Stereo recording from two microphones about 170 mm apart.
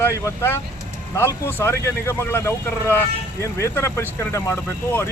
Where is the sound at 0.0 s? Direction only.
15° left (ahead or behind).